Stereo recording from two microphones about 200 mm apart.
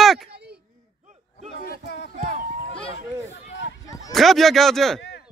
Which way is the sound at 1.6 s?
55° left (ahead or behind).